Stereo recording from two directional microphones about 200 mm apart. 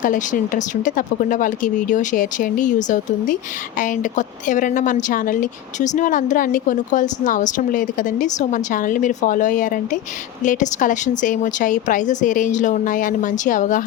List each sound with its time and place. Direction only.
0.0 s a woman's voice: 40° left (ahead or behind)